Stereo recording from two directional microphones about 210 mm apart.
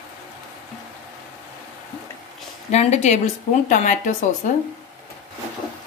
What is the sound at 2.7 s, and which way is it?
Speech, 30° left (ahead or behind).